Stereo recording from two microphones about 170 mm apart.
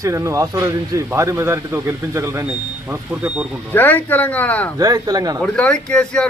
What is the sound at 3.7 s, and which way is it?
Speech, 10° left (ahead or behind).